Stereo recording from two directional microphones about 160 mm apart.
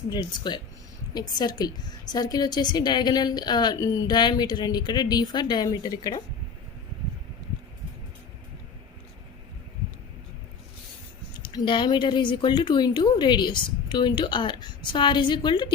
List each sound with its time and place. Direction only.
0.1 s a woman's voice: 25° left (ahead or behind)
11.4 s a woman's voice: 30° left (ahead or behind)